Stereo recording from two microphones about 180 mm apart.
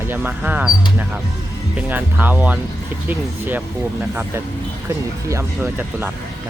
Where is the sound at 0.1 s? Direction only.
10° right (ahead or behind).